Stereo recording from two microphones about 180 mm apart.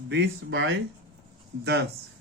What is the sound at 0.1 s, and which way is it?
Speech, 80° right.